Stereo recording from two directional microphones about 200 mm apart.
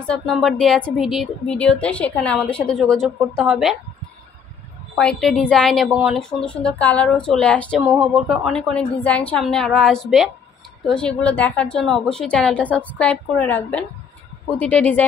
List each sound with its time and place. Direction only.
0.0 s a woman's voice: 5° left (ahead or behind)
4.9 s a woman's voice: 5° left (ahead or behind)